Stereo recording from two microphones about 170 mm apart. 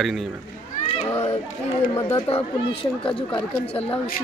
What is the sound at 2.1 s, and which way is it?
Speech, 30° left (ahead or behind).